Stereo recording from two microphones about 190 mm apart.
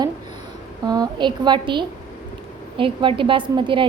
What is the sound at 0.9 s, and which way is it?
A woman's voice, 20° right (ahead or behind).